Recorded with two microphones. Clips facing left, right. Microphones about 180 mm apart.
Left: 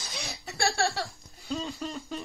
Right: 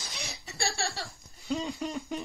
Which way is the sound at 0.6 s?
60° left (ahead or behind).